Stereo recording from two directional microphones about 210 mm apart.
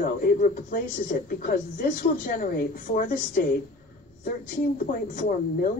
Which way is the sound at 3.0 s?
40° left (ahead or behind).